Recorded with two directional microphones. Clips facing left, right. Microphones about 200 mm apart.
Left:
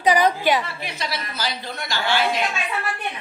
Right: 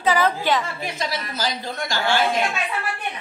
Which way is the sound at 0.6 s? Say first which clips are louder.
Right 2 dB; 45° right (ahead or behind).